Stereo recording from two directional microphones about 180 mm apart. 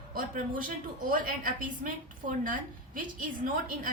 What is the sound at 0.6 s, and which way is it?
A woman's voice, 50° right (ahead or behind).